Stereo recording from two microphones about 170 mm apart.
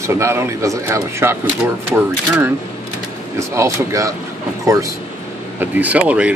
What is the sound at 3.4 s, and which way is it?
Speech, 15° right (ahead or behind).